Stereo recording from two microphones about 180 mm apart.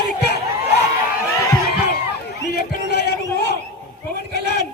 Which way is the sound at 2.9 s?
65° left (ahead or behind).